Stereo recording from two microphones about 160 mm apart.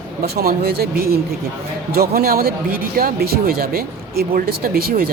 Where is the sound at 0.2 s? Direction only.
70° right (ahead or behind).